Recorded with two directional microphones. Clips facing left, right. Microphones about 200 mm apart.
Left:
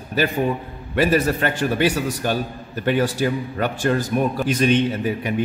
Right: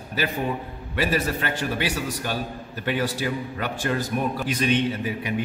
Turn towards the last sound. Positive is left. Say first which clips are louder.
# left 4 dB
turn(degrees=50)  # may be behind; listen again after turning